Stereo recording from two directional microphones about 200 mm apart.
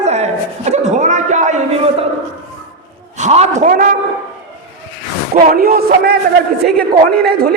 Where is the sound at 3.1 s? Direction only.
35° right (ahead or behind).